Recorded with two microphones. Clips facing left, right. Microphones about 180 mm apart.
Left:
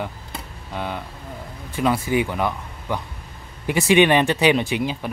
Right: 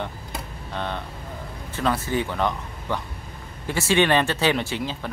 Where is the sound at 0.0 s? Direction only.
5° left (ahead or behind).